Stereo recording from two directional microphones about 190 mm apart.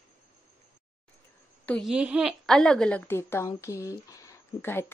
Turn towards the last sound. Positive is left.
turn(degrees=10)  # may be behind; listen again after turning